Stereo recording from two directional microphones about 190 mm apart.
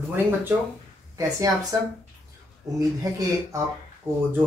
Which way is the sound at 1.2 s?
15° right (ahead or behind).